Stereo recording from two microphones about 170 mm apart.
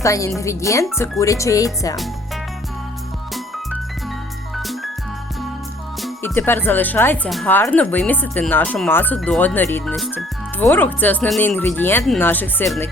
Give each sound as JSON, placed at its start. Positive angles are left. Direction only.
{"t": 0.0, "sound": "speech", "side_deg": 20}
{"t": 4.5, "sound": "music", "side_deg": 0}
{"t": 6.2, "sound": "speech", "side_deg": 10}
{"t": 7.3, "sound": "speech", "side_deg": 0}
{"t": 7.5, "sound": "speech", "side_deg": 10}
{"t": 10.6, "sound": "speech", "side_deg": 10}